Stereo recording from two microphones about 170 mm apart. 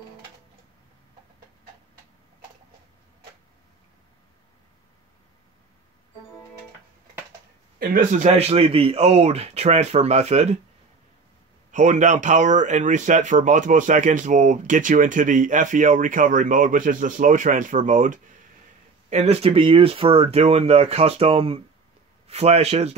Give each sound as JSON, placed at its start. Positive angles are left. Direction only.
{"t": 7.8, "sound": "speech", "side_deg": -50}
{"t": 11.7, "sound": "speech", "side_deg": -45}